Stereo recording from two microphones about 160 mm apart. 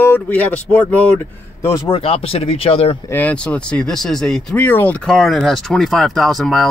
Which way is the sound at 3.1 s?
10° left (ahead or behind).